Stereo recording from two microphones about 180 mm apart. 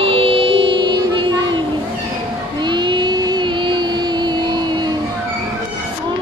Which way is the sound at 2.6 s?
25° right (ahead or behind).